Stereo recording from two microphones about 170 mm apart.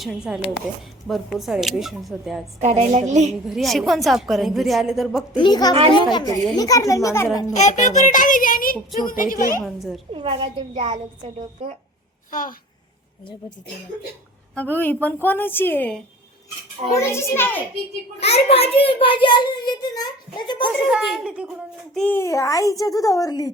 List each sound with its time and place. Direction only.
0.3 s a woman's voice: 5° right (ahead or behind)
2.6 s a child's voice: 40° right (ahead or behind)
3.4 s a woman's voice: centre (ahead or behind)
5.4 s a child's voice: 25° left (ahead or behind)
7.5 s a child's voice: 45° left (ahead or behind)
9.6 s a woman's voice: centre (ahead or behind)
10.1 s a child's voice: 35° right (ahead or behind)
12.3 s a child's voice: 50° left (ahead or behind)
14.5 s a woman's voice: 10° left (ahead or behind)
18.2 s a child's voice: 35° left (ahead or behind)
20.8 s a woman's voice: centre (ahead or behind)
21.9 s a child's voice: 10° left (ahead or behind)